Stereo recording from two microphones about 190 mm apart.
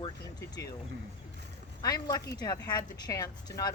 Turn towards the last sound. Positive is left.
turn(degrees=20)  # may be behind; listen again after turning